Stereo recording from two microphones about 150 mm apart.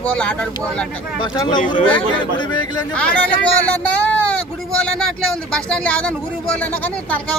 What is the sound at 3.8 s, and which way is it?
Speech, 10° left (ahead or behind).